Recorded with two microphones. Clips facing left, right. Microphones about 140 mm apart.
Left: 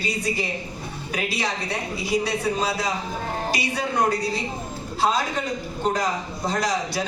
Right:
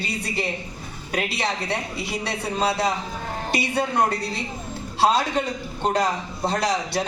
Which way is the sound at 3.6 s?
60° right (ahead or behind).